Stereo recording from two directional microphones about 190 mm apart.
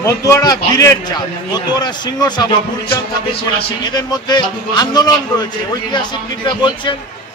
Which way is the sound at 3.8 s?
20° left (ahead or behind).